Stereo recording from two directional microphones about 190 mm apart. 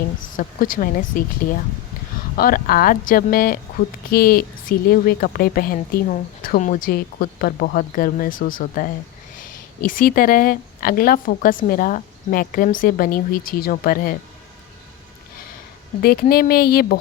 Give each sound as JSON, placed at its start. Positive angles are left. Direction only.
{"t": 0.3, "sound": "a woman's voice", "side_deg": 45}
{"t": 2.4, "sound": "a woman's voice", "side_deg": 50}
{"t": 16.2, "sound": "a woman's voice", "side_deg": 50}